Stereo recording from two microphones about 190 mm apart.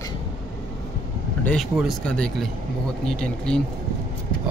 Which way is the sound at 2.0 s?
5° left (ahead or behind).